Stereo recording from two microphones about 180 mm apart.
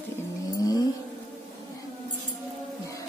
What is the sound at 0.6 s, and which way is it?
Vehicle, 20° left (ahead or behind).